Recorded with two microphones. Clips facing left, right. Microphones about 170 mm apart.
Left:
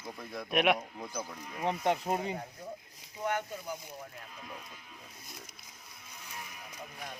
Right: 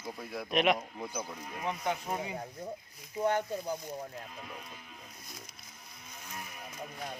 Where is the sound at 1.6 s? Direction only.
30° left (ahead or behind).